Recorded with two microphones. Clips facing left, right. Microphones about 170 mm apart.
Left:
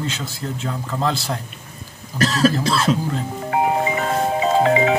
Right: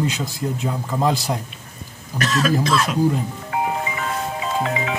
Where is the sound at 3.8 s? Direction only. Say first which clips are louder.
Left 6 dB; 40° left (ahead or behind).